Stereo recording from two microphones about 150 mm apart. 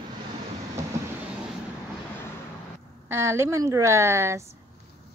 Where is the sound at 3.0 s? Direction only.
15° right (ahead or behind).